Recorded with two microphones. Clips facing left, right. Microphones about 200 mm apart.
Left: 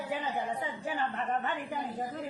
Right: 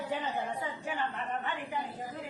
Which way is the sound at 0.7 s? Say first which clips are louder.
Left 2 dB; 35° left (ahead or behind).